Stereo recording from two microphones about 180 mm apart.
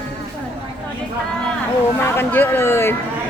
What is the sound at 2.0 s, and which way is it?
Chatter, 10° left (ahead or behind).